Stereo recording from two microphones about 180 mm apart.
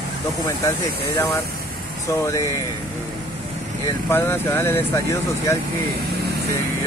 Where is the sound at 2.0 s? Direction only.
15° left (ahead or behind).